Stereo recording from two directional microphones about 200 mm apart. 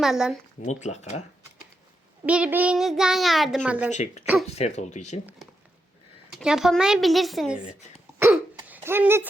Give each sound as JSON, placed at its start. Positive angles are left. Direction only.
{"t": 0.0, "sound": "a child's voice", "side_deg": -5}
{"t": 0.6, "sound": "speech", "side_deg": 35}
{"t": 2.2, "sound": "a child's voice", "side_deg": -5}
{"t": 3.9, "sound": "speech", "side_deg": 35}
{"t": 6.3, "sound": "a child's voice", "side_deg": -5}
{"t": 7.6, "sound": "speech", "side_deg": 35}
{"t": 8.6, "sound": "a sound", "side_deg": -10}